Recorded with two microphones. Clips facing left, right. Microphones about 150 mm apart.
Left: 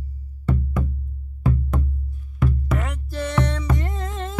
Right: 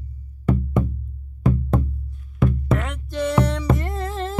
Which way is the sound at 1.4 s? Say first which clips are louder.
Right 3 dB; 30° right (ahead or behind).